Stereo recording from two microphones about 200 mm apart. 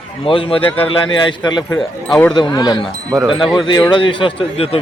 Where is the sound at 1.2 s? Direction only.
25° left (ahead or behind).